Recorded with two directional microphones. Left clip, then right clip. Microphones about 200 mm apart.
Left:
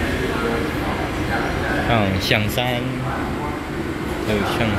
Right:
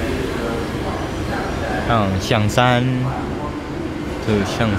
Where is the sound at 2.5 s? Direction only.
30° right (ahead or behind).